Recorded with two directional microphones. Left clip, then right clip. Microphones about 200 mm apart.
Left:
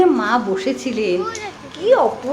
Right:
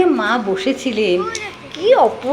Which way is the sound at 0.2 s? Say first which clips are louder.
Right 1 dB; 5° left (ahead or behind).